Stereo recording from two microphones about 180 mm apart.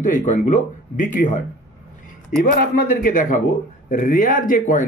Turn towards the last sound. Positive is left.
turn(degrees=50)  # may be behind; listen again after turning